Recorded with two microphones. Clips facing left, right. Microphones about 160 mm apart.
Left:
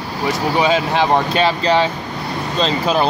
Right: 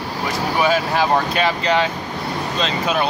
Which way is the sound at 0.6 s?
20° left (ahead or behind).